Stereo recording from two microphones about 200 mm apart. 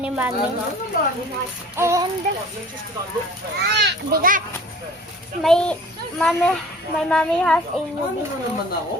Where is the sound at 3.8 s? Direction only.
45° right (ahead or behind).